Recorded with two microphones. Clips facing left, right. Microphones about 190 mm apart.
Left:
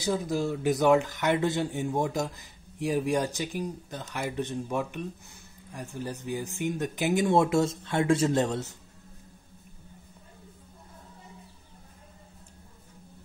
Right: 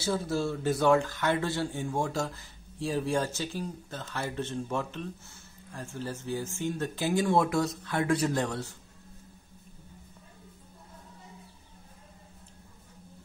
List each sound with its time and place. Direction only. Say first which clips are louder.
0.0 s speech: left 1 dB; 15° left (ahead or behind)